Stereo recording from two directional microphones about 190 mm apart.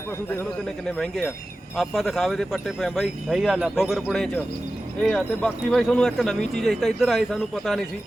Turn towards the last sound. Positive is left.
turn(degrees=0)  # may be behind; listen again after turning